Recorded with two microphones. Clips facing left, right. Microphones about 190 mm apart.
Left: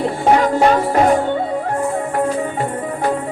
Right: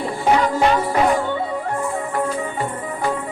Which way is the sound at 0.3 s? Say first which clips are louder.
Left 3 dB; 45° left (ahead or behind).